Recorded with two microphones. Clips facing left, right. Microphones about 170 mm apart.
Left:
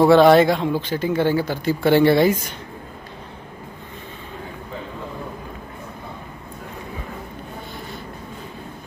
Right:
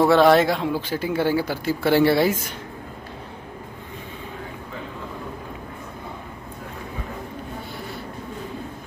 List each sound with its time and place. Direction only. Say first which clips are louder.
0.0 s speech: left 3 dB; centre (ahead or behind)